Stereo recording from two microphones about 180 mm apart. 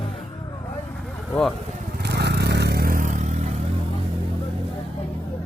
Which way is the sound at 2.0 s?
70° right (ahead or behind).